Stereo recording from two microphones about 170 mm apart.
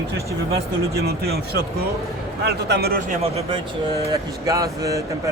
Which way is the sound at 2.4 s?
80° right.